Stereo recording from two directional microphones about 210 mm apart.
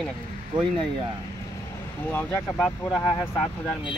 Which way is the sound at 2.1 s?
10° left (ahead or behind).